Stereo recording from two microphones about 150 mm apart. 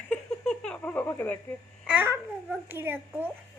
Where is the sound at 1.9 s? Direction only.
15° right (ahead or behind).